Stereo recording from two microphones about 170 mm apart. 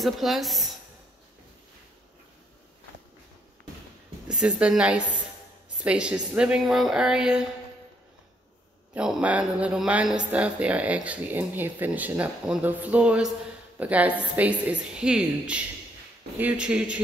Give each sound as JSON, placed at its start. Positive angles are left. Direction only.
{"t": 0.0, "sound": "a woman's voice", "side_deg": 0}
{"t": 4.3, "sound": "a woman's voice", "side_deg": -5}
{"t": 8.9, "sound": "speech", "side_deg": -5}